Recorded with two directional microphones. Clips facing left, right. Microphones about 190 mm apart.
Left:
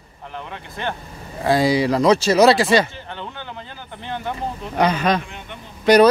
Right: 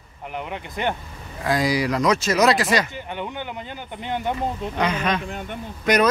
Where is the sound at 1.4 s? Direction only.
30° left (ahead or behind).